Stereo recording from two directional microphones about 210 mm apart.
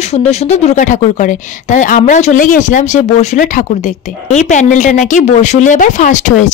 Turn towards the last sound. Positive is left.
turn(degrees=35)  # may be behind; listen again after turning